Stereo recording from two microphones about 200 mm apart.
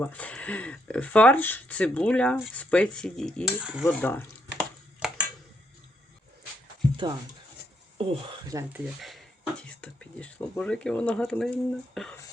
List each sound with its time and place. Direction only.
0.0 s speech: 5° left (ahead or behind)
3.8 s chopping: 10° left (ahead or behind)
5.0 s a sound: centre (ahead or behind)
6.9 s speech: 25° right (ahead or behind)
9.0 s speech: centre (ahead or behind)